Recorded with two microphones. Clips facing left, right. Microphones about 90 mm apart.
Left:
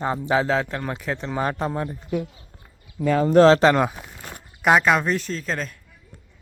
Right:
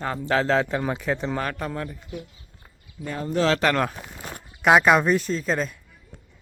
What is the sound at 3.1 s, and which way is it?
Speech, 90° left.